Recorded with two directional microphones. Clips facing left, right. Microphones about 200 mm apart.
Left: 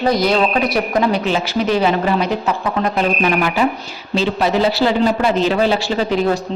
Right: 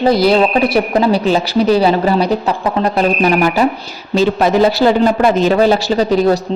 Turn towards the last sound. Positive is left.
turn(degrees=-40)  # may be behind; listen again after turning